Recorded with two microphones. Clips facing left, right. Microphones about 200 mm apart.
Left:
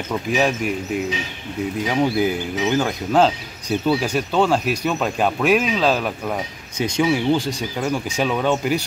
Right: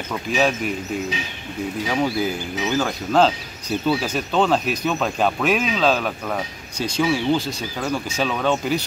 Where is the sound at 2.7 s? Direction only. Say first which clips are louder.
Left 1 dB; 15° left (ahead or behind).